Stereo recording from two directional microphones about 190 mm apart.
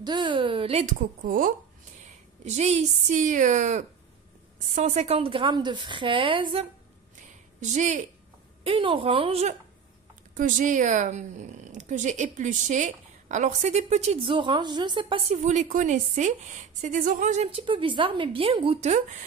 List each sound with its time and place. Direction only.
0.0 s a woman's voice: 25° right (ahead or behind)
0.9 s a woman's voice: 45° right (ahead or behind)
2.4 s a woman's voice: 35° right (ahead or behind)
7.6 s speech: 40° right (ahead or behind)
8.6 s a woman's voice: 25° right (ahead or behind)